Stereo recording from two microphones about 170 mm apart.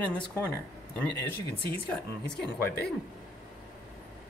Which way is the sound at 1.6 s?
65° left (ahead or behind).